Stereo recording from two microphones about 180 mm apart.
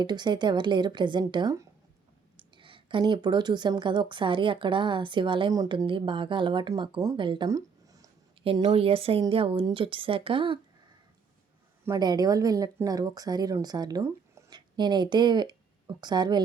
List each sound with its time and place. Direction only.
0.0 s a woman's voice: 25° right (ahead or behind)
11.9 s a woman's voice: 20° right (ahead or behind)